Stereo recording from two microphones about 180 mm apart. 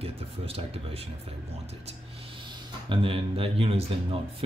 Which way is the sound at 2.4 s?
30° right (ahead or behind).